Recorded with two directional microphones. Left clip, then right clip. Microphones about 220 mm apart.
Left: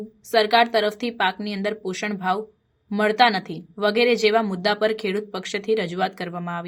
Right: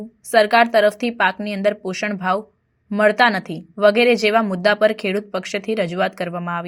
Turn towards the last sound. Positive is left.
turn(degrees=-15)  # may be behind; listen again after turning